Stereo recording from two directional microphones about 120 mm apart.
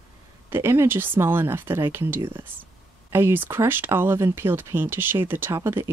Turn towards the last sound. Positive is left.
turn(degrees=-20)  # may be behind; listen again after turning